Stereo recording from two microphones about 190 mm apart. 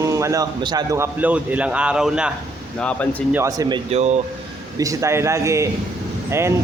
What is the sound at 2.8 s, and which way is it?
Speech, 5° left (ahead or behind).